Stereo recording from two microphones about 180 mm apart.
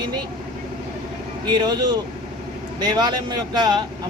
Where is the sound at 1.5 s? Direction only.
25° right (ahead or behind).